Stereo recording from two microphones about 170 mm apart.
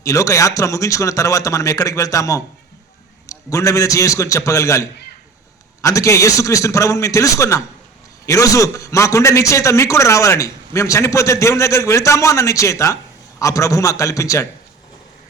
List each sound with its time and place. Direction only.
0.0 s a man's voice: 20° left (ahead or behind)